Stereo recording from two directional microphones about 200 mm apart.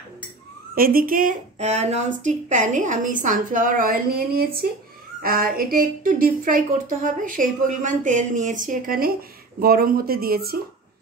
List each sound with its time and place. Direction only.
0.7 s a woman's voice: 45° right (ahead or behind)